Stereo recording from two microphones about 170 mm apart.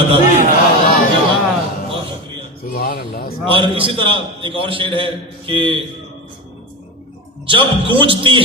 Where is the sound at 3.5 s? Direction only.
30° right (ahead or behind).